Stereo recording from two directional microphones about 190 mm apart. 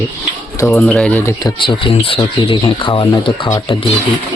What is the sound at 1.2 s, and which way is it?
Speech, 20° left (ahead or behind).